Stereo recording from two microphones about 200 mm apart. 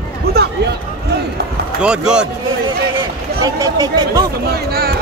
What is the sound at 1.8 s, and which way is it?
Speech, 5° right (ahead or behind).